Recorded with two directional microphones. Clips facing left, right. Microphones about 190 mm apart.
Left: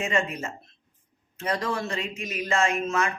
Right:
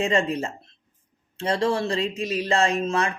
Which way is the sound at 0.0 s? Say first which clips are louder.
Right 5 dB; 30° right (ahead or behind).